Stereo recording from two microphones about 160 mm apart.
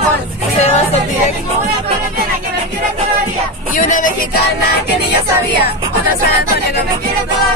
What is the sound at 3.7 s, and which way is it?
Music, 55° left (ahead or behind).